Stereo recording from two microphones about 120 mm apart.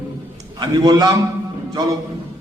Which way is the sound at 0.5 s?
35° right (ahead or behind).